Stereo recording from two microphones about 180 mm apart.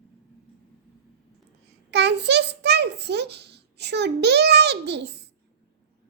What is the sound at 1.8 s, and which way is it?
A child's voice, 70° right (ahead or behind).